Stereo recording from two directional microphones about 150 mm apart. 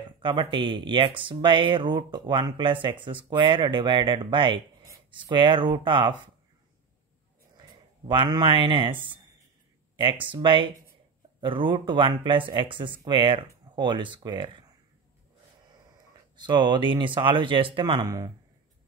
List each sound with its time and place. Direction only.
0.2 s speech: 30° right (ahead or behind)
8.1 s speech: 35° right (ahead or behind)
9.9 s speech: 35° right (ahead or behind)
16.3 s speech: 30° right (ahead or behind)
18.0 s speech: 25° right (ahead or behind)